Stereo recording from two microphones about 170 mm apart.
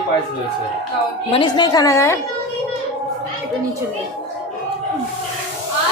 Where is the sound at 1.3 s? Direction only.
25° left (ahead or behind).